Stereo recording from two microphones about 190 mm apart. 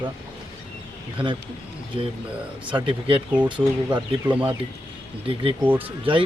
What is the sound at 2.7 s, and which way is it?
Speech, 25° right (ahead or behind).